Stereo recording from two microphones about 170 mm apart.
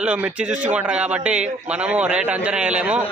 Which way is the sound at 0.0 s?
5° right (ahead or behind).